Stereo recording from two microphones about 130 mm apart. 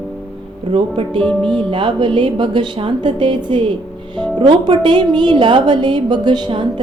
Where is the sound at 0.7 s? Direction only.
45° right (ahead or behind).